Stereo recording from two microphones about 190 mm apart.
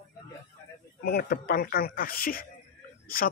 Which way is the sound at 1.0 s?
55° left (ahead or behind).